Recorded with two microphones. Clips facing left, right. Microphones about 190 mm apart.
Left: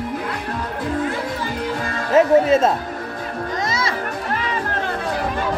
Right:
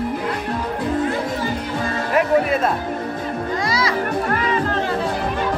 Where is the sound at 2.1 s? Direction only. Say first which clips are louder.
Left 5 dB; 25° left (ahead or behind).